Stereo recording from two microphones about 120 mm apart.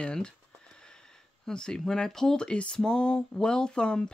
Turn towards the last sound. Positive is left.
turn(degrees=5)  # may be behind; listen again after turning